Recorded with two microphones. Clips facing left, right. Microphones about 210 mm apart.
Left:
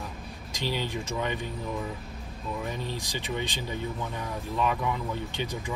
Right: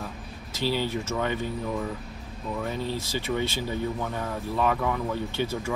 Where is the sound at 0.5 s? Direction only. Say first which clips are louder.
Right 4 dB; 15° left (ahead or behind).